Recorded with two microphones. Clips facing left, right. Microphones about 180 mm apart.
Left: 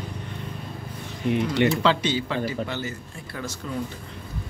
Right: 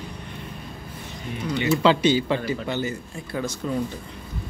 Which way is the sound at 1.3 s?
65° left (ahead or behind).